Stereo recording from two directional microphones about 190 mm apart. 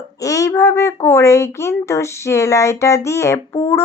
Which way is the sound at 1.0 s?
15° left (ahead or behind).